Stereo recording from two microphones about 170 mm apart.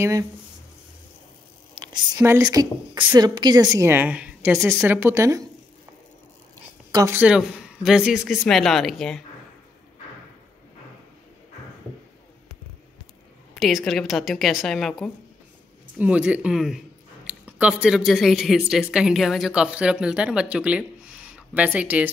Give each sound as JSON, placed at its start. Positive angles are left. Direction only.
{"t": 0.0, "sound": "a woman's voice", "side_deg": -20}
{"t": 1.9, "sound": "a woman's voice", "side_deg": -20}
{"t": 3.7, "sound": "speech", "side_deg": -15}
{"t": 6.9, "sound": "speech", "side_deg": -20}
{"t": 7.2, "sound": "speech", "side_deg": -5}
{"t": 13.6, "sound": "speech", "side_deg": 0}